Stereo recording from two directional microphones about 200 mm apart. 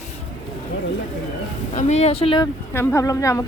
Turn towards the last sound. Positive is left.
turn(degrees=15)  # may be behind; listen again after turning